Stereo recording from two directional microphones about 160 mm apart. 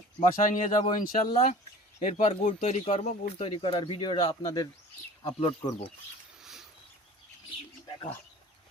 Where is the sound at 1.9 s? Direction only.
45° left (ahead or behind); by 5.9 s 25° left (ahead or behind).